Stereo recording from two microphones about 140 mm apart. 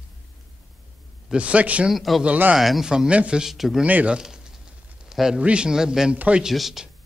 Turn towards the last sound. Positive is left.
turn(degrees=0)  # may be behind; listen again after turning